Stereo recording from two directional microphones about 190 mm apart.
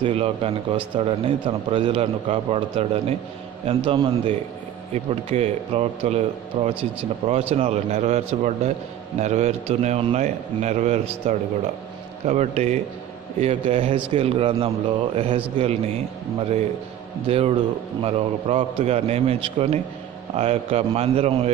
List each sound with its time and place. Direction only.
0.0 s a man's voice: 30° right (ahead or behind)